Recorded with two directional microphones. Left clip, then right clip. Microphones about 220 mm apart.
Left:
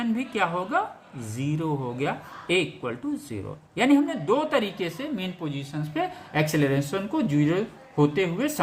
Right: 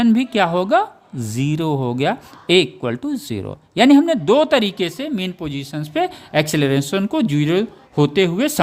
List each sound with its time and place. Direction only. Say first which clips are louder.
0.0 s speech: right 9 dB; 55° right (ahead or behind)